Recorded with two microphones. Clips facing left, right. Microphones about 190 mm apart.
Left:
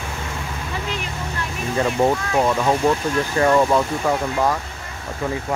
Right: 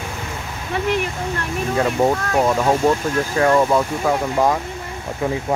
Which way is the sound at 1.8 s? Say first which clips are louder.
Even; centre (ahead or behind).